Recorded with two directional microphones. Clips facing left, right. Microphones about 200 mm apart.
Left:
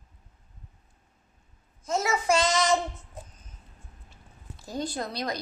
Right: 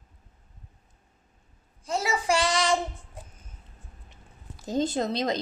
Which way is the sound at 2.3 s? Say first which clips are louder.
Left 1 dB; 15° right (ahead or behind).